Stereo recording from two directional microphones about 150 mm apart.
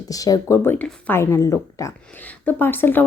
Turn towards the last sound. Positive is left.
turn(degrees=15)  # may be behind; listen again after turning